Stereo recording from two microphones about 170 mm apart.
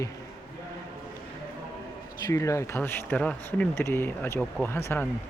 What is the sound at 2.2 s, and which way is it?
Speech, 20° left (ahead or behind).